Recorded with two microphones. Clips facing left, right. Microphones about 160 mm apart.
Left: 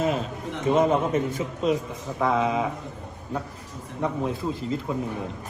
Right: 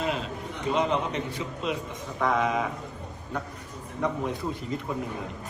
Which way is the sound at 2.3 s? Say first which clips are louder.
Left 2 dB; 30° left (ahead or behind).